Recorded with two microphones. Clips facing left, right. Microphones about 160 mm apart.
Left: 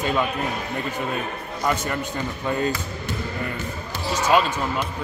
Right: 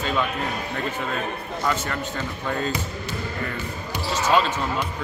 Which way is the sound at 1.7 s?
15° left (ahead or behind).